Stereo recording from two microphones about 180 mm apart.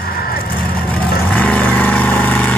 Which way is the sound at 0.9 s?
10° left (ahead or behind).